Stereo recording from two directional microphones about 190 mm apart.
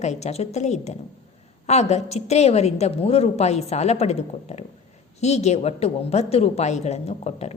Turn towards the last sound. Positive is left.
turn(degrees=35)  # may be behind; listen again after turning